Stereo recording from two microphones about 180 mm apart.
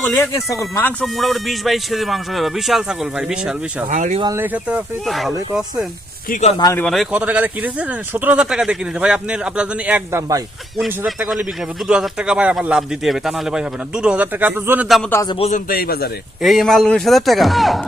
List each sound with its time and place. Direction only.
0.0 s speech: 15° left (ahead or behind); by 3.8 s 5° right (ahead or behind)
3.8 s speech: 45° right (ahead or behind)
4.4 s speech: 10° right (ahead or behind)
6.6 s speech: 20° left (ahead or behind)
6.8 s speech: centre (ahead or behind); by 10.4 s 15° right (ahead or behind)
10.8 s speech: 5° right (ahead or behind)
15.1 s a man's voice: 20° left (ahead or behind)
15.4 s a man's voice: 40° left (ahead or behind)
15.7 s a man's voice: 60° left (ahead or behind)
16.4 s speech: centre (ahead or behind)